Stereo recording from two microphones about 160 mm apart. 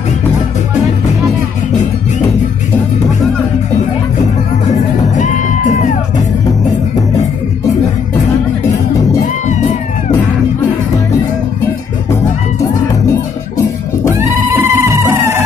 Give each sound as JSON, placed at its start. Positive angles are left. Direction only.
{"t": 4.6, "sound": "music", "side_deg": 45}
{"t": 9.2, "sound": "music", "side_deg": 50}
{"t": 14.1, "sound": "music", "side_deg": -15}